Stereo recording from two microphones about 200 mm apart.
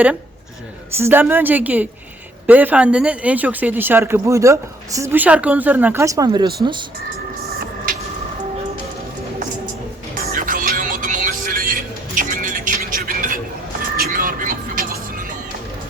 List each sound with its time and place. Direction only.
0.9 s speech: 10° right (ahead or behind)
10.2 s music: 40° right (ahead or behind)